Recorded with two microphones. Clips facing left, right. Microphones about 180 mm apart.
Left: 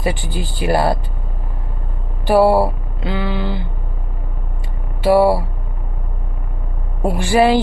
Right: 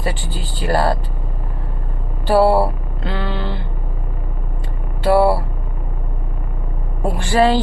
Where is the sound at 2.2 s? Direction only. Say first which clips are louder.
Left 1 dB; 10° left (ahead or behind).